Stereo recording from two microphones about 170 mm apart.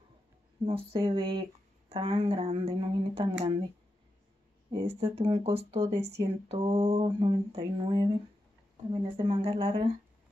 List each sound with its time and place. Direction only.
0.7 s speech: 30° right (ahead or behind)
4.6 s speech: 35° right (ahead or behind)